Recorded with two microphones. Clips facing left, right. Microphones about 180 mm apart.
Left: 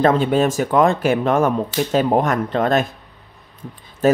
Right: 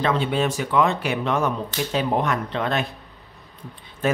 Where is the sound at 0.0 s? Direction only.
45° left (ahead or behind).